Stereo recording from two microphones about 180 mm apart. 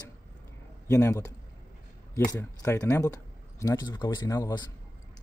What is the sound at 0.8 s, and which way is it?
Speech, 15° left (ahead or behind).